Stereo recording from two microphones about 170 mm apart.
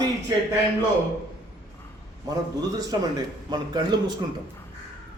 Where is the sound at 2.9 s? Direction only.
25° right (ahead or behind).